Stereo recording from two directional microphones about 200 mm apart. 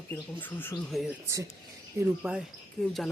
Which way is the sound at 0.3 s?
10° left (ahead or behind).